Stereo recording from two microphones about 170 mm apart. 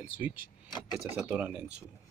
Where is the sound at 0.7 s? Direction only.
20° left (ahead or behind).